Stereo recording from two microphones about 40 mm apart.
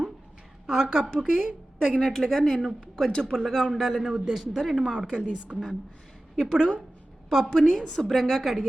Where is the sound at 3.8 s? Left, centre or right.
Centre.